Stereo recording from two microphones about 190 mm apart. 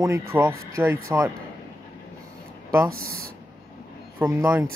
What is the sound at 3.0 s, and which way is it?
Speech, 90° right.